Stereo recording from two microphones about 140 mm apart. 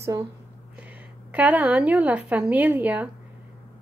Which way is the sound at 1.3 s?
10° right (ahead or behind).